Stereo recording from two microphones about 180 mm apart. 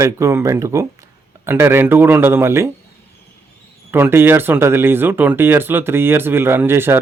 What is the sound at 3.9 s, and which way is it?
Speech, 10° right (ahead or behind).